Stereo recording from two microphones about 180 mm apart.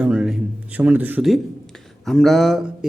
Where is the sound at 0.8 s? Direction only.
10° right (ahead or behind).